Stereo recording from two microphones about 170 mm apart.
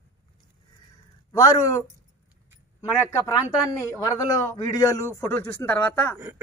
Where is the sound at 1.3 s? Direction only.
20° left (ahead or behind).